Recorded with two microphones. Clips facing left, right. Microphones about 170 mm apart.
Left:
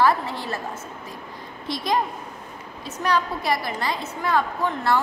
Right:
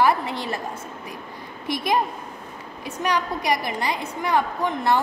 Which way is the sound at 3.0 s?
15° right (ahead or behind).